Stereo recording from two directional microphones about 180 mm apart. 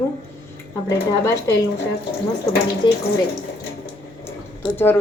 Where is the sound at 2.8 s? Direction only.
25° left (ahead or behind).